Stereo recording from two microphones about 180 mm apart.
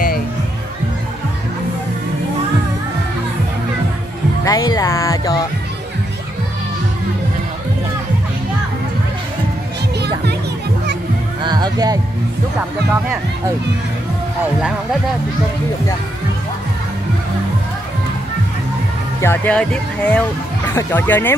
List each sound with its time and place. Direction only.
4.5 s speech: 20° left (ahead or behind)
11.4 s music: 25° right (ahead or behind)
19.2 s speech: 10° left (ahead or behind)